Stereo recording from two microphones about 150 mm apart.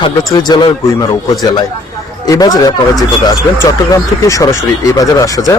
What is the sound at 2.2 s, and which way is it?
Speech, 25° left (ahead or behind).